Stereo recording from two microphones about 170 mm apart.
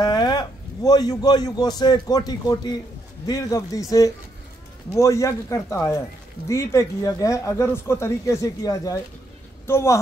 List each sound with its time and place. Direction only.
0.0 s a man's voice: 25° left (ahead or behind)
4.8 s speech: 15° left (ahead or behind)